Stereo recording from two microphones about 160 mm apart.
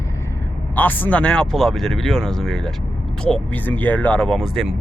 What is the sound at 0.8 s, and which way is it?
Speech, 10° left (ahead or behind).